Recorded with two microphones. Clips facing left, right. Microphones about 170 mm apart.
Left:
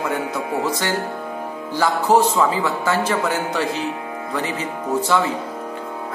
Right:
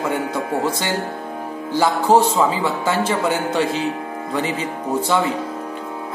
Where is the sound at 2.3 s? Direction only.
25° right (ahead or behind).